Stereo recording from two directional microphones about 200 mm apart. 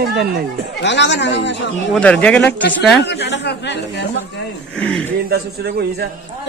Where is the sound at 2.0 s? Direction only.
5° left (ahead or behind).